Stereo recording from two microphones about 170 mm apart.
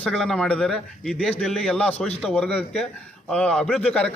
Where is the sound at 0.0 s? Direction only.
Centre (ahead or behind).